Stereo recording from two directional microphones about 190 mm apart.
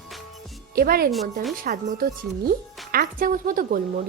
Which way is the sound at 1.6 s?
40° right (ahead or behind).